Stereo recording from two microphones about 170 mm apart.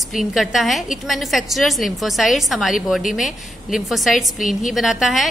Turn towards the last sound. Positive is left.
turn(degrees=0)  # may be behind; listen again after turning